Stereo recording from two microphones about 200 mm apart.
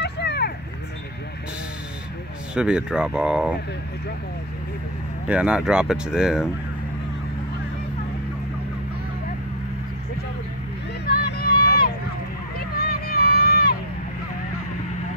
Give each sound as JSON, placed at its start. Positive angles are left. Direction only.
{"t": 0.0, "sound": "vehicle", "side_deg": 55}
{"t": 2.5, "sound": "speech", "side_deg": -5}
{"t": 5.3, "sound": "speech", "side_deg": -5}
{"t": 11.1, "sound": "vehicle", "side_deg": 50}
{"t": 12.5, "sound": "a sound", "side_deg": 50}